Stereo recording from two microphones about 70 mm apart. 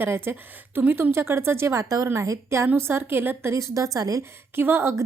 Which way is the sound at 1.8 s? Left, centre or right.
Right.